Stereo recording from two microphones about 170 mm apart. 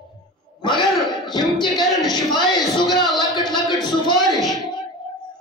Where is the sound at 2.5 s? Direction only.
Centre (ahead or behind).